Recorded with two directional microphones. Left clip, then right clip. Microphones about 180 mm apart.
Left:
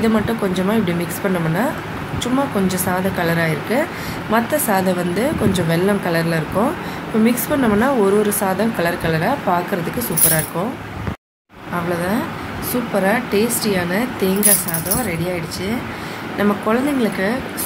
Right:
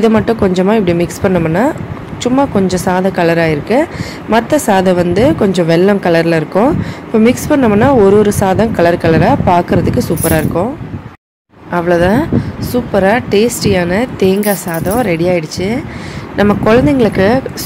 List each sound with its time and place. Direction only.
0.0 s a woman's voice: 40° right (ahead or behind)
11.7 s a woman's voice: 45° right (ahead or behind)